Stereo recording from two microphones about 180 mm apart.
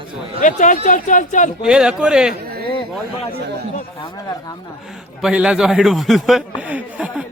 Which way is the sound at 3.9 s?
20° left (ahead or behind).